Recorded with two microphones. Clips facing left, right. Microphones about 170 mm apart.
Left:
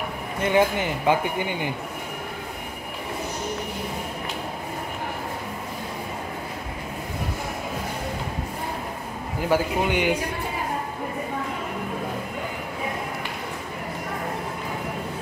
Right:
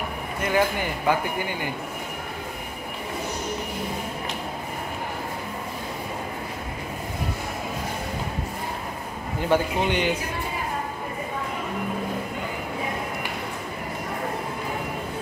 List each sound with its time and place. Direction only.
0.4 s speech: 20° left (ahead or behind)
9.4 s a man's voice: 5° left (ahead or behind)